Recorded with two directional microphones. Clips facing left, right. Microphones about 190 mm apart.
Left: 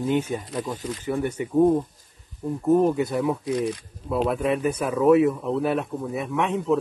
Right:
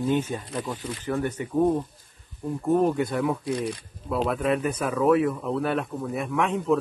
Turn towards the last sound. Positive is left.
turn(degrees=5)  # may be behind; listen again after turning